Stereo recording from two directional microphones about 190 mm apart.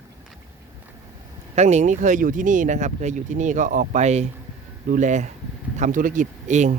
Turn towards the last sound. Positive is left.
turn(degrees=-40)  # may be behind; listen again after turning